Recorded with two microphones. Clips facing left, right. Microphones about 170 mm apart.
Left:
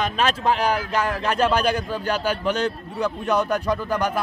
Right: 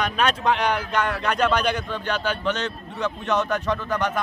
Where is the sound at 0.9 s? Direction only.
30° left (ahead or behind).